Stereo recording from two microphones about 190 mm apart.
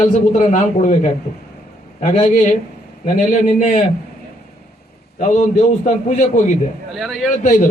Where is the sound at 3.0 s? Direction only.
40° left (ahead or behind).